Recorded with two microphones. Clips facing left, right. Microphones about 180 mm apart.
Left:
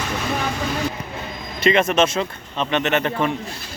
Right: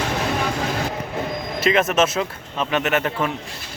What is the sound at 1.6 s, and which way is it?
Speech, 5° right (ahead or behind).